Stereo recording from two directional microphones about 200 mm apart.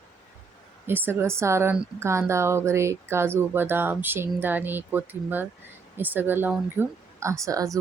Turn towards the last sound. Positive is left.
turn(degrees=-15)  # may be behind; listen again after turning